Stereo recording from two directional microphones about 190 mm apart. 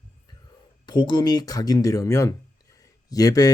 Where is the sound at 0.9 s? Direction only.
25° left (ahead or behind).